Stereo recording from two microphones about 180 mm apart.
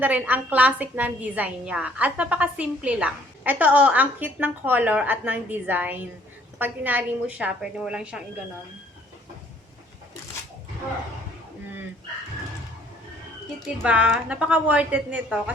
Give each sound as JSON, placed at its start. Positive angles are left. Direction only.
{"t": 0.0, "sound": "a woman's voice", "side_deg": -10}
{"t": 13.8, "sound": "a woman's voice", "side_deg": -5}